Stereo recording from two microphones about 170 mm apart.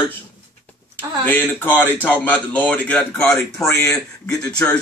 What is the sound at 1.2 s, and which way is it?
A man's voice, 10° left (ahead or behind).